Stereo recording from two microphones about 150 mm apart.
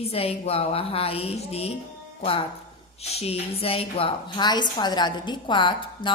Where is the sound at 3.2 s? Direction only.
40° left (ahead or behind).